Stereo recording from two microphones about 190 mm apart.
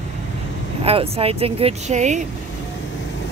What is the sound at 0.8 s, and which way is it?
Speech, 30° right (ahead or behind).